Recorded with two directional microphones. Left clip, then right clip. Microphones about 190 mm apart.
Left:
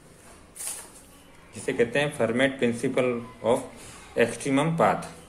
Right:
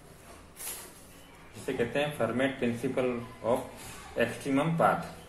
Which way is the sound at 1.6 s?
45° left (ahead or behind).